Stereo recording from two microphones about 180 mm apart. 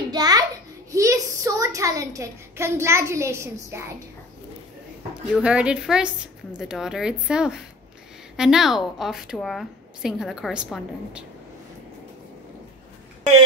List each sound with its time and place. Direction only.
0.1 s a sound: 20° right (ahead or behind)
3.7 s a woman's voice: 15° right (ahead or behind)
5.3 s a woman's voice: 5° right (ahead or behind)